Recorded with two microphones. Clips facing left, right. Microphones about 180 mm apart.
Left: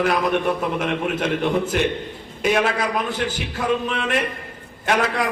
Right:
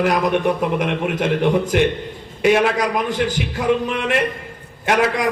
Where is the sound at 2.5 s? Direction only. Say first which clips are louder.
Right 3 dB; 15° right (ahead or behind).